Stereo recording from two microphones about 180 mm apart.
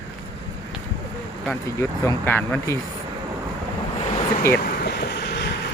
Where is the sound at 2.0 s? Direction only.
15° left (ahead or behind).